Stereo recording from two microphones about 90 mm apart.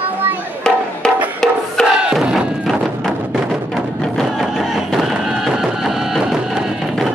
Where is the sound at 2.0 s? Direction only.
5° right (ahead or behind).